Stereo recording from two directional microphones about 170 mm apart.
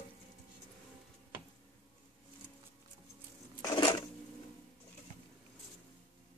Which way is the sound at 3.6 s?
25° left (ahead or behind).